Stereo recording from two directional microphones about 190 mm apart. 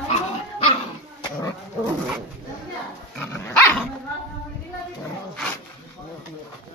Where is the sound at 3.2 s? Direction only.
10° left (ahead or behind).